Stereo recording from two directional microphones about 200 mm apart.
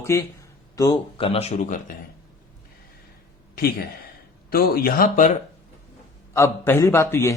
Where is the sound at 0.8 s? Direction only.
25° left (ahead or behind).